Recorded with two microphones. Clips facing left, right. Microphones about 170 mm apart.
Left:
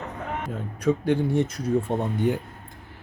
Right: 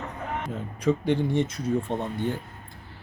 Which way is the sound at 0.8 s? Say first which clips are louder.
Left 1 dB; centre (ahead or behind).